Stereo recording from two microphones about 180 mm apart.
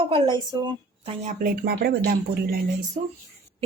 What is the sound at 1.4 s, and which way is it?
Speech, 60° right (ahead or behind).